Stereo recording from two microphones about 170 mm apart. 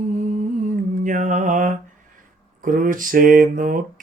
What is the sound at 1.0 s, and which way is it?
Speech, 50° right (ahead or behind).